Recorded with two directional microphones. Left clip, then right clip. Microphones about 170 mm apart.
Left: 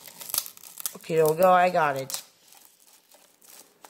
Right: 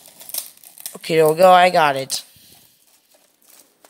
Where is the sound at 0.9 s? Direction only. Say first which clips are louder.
Right 7 dB; 15° right (ahead or behind).